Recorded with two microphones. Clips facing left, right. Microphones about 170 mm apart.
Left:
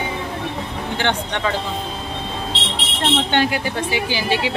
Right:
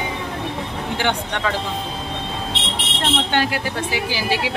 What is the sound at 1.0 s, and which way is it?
Speech, 10° right (ahead or behind).